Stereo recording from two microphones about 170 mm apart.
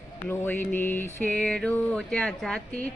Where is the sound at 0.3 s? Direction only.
10° left (ahead or behind).